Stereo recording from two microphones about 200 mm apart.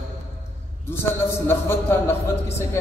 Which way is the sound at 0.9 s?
10° left (ahead or behind).